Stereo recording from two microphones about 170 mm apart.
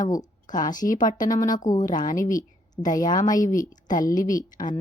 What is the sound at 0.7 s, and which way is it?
Speech, 50° left (ahead or behind).